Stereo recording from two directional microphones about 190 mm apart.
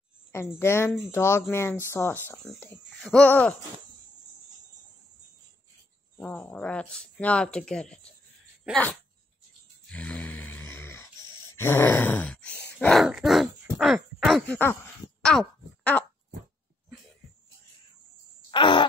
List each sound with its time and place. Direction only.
0.3 s a child's voice: 15° left (ahead or behind)
6.1 s speech: 5° left (ahead or behind)
9.8 s snoring: 5° left (ahead or behind)
11.5 s groan: 10° left (ahead or behind)
12.7 s a sound: 5° left (ahead or behind)
14.2 s speech: centre (ahead or behind)
18.5 s groan: 25° left (ahead or behind)